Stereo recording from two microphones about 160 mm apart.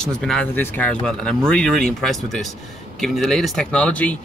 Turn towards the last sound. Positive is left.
turn(degrees=10)  # may be behind; listen again after turning